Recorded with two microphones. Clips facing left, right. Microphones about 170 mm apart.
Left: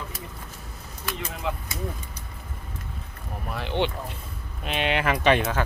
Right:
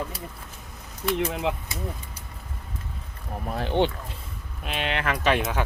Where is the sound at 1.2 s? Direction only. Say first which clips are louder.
Right 3 dB; 60° right (ahead or behind).